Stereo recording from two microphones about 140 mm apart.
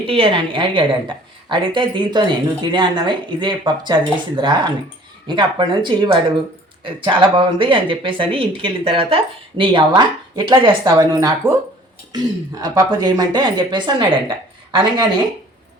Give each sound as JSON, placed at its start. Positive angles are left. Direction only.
{"t": 0.0, "sound": "speech", "side_deg": -40}
{"t": 12.6, "sound": "speech", "side_deg": -30}